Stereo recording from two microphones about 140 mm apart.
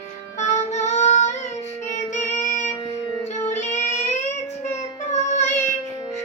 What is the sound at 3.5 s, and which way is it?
Child singing, 55° left (ahead or behind).